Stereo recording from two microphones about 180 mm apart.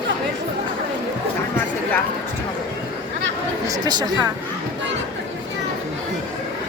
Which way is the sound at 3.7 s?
20° right (ahead or behind).